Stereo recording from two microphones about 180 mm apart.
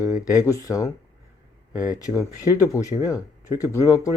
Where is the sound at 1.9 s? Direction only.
20° left (ahead or behind).